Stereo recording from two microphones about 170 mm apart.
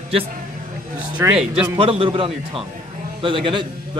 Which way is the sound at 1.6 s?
35° right (ahead or behind).